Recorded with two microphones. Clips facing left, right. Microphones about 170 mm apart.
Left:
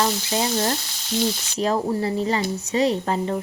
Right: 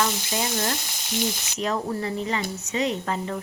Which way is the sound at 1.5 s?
35° left (ahead or behind).